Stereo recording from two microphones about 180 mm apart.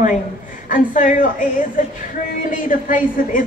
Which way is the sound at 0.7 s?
45° left (ahead or behind).